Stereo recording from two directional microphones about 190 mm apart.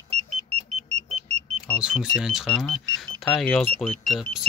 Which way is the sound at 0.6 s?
35° right (ahead or behind).